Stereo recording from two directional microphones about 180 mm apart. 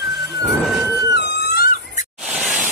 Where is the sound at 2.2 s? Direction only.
5° right (ahead or behind).